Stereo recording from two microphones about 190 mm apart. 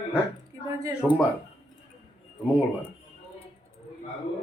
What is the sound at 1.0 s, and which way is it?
Speech, 5° right (ahead or behind).